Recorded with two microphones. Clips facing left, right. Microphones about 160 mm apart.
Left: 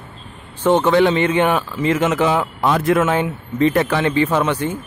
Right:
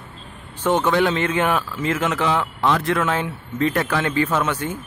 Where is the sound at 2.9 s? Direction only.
20° left (ahead or behind).